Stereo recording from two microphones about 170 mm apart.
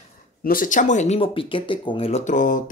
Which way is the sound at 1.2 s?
30° left (ahead or behind).